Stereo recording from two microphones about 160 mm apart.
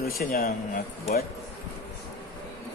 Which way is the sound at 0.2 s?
70° left (ahead or behind).